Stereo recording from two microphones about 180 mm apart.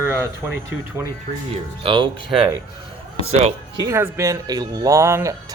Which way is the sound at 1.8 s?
25° right (ahead or behind).